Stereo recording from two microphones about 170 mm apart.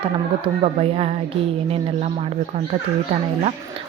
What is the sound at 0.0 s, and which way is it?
Speech, 35° right (ahead or behind).